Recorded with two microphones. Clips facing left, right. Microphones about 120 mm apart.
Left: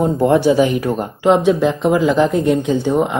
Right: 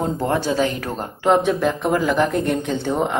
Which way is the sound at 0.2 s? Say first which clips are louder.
Left 9 dB; 10° left (ahead or behind).